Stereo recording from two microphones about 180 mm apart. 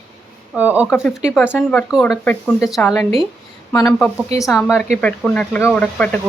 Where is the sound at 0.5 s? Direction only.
10° right (ahead or behind).